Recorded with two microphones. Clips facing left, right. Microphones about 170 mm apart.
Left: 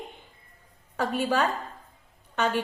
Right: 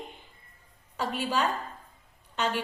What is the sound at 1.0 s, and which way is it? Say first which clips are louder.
A woman's voice: left 4 dB; 55° left (ahead or behind).